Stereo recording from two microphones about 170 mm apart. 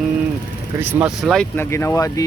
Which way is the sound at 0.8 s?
10° right (ahead or behind).